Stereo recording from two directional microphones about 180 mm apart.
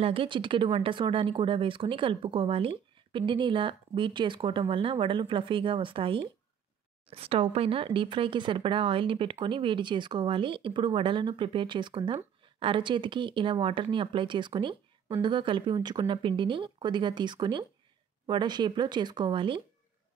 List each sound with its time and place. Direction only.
0.0 s speech: 30° right (ahead or behind)